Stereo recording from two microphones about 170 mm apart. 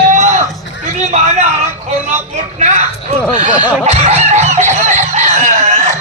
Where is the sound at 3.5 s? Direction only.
25° left (ahead or behind).